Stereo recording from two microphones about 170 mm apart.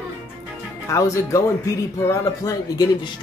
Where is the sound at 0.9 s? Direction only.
20° left (ahead or behind).